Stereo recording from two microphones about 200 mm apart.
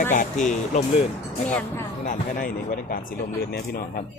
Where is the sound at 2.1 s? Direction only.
45° left (ahead or behind).